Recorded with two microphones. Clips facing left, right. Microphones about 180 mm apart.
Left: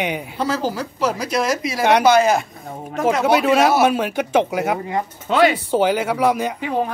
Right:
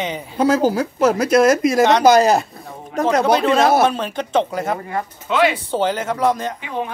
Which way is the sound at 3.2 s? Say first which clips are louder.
Left 1 dB; 10° left (ahead or behind).